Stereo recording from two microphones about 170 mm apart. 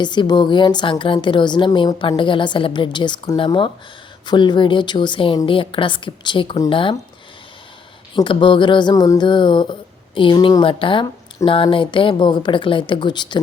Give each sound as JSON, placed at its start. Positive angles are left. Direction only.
{"t": 0.0, "sound": "a woman's voice", "side_deg": 25}
{"t": 8.1, "sound": "a woman's voice", "side_deg": 30}